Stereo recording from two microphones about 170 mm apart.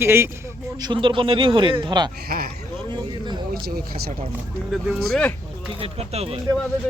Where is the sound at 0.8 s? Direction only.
30° right (ahead or behind).